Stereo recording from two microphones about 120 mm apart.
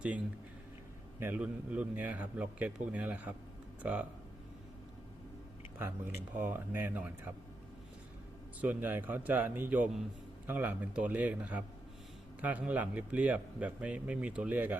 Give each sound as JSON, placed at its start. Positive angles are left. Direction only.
{"t": 1.2, "sound": "a man's voice", "side_deg": -15}
{"t": 6.3, "sound": "a man's voice", "side_deg": -15}
{"t": 8.6, "sound": "a man's voice", "side_deg": -15}